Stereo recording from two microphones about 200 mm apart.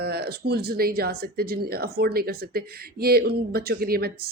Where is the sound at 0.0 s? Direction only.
50° right (ahead or behind).